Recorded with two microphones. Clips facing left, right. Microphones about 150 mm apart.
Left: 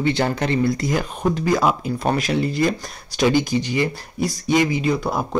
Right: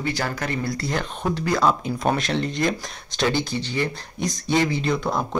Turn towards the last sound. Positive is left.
turn(degrees=10)  # may be behind; listen again after turning